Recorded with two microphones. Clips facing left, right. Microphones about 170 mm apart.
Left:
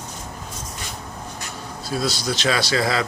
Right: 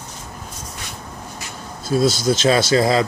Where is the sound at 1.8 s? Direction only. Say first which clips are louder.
Right 8 dB; 25° right (ahead or behind).